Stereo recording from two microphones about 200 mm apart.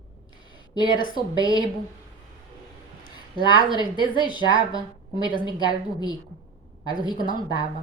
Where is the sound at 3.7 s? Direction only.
20° left (ahead or behind).